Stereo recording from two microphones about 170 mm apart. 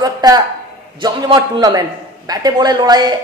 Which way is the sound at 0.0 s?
20° right (ahead or behind).